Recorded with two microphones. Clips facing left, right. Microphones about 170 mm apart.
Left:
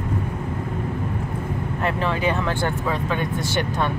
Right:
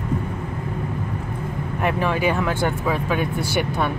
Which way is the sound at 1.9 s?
15° right (ahead or behind).